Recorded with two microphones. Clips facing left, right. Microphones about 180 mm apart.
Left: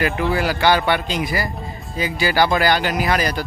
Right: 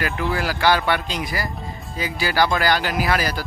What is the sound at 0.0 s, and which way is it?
Speech, centre (ahead or behind).